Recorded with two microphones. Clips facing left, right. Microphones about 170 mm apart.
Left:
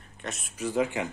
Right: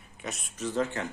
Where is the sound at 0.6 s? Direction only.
10° left (ahead or behind).